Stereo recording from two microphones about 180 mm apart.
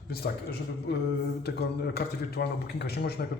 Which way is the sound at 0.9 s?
70° left (ahead or behind).